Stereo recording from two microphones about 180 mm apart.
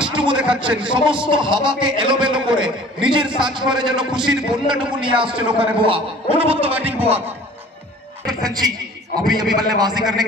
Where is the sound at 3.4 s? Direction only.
5° right (ahead or behind).